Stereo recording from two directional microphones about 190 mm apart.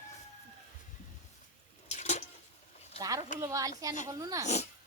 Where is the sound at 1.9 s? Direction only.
35° left (ahead or behind).